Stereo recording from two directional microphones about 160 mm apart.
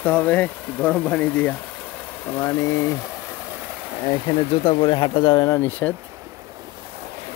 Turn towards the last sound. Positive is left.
turn(degrees=10)  # may be behind; listen again after turning